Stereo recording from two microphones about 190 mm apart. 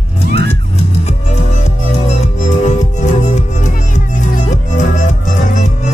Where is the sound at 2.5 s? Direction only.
40° left (ahead or behind).